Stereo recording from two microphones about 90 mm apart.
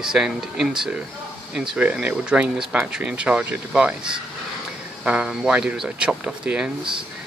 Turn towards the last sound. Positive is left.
turn(degrees=-10)  # may be behind; listen again after turning